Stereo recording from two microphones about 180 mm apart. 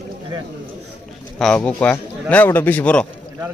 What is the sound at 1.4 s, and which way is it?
A man's voice, 5° left (ahead or behind).